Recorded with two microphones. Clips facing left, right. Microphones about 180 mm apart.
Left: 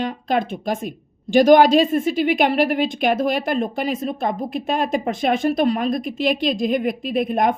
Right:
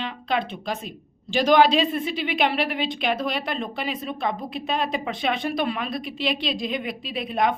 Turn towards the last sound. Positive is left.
turn(degrees=50)  # may be behind; listen again after turning